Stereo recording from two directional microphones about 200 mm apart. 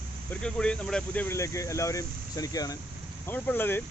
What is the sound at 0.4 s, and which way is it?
Speech, 5° left (ahead or behind).